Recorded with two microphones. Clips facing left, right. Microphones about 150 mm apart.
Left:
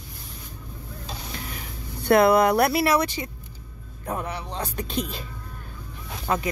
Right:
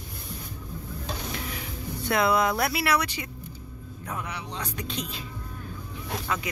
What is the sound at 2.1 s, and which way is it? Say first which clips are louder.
Speech: left 7 dB; 55° left (ahead or behind).